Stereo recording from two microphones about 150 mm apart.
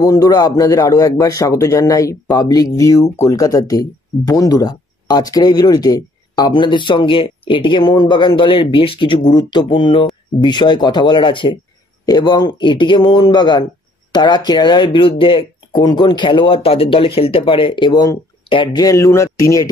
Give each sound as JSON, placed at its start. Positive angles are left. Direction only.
{"t": 0.0, "sound": "speech", "side_deg": 25}